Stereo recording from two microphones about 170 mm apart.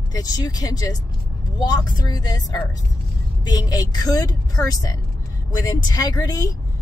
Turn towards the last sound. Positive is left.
turn(degrees=20)  # may be behind; listen again after turning